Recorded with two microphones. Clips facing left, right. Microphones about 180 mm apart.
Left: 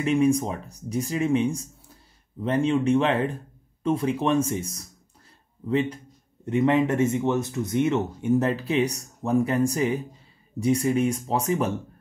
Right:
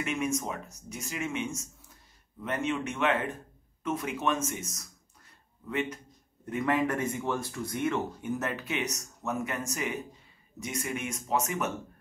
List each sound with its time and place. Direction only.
0.0 s speech: 30° left (ahead or behind)